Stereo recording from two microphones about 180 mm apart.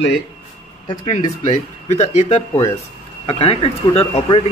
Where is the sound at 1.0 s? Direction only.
40° left (ahead or behind).